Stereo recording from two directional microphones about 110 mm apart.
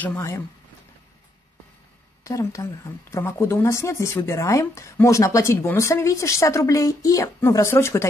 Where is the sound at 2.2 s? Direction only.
30° left (ahead or behind).